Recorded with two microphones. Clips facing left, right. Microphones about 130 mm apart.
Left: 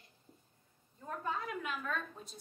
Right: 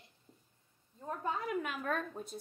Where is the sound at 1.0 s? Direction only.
20° right (ahead or behind).